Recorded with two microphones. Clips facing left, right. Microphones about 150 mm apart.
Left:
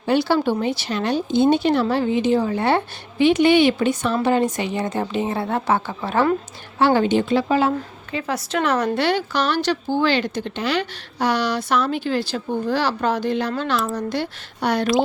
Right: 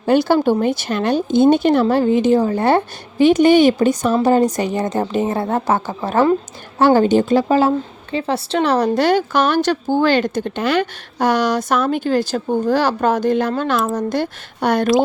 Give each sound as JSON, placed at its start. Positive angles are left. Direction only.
{"t": 0.0, "sound": "a woman's voice", "side_deg": -45}